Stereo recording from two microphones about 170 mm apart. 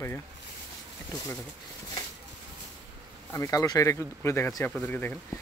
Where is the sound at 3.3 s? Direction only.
20° left (ahead or behind).